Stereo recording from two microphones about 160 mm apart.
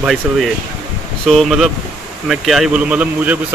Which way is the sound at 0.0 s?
Centre (ahead or behind).